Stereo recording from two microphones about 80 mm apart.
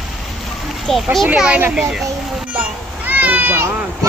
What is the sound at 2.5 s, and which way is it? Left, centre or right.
Children playing, right.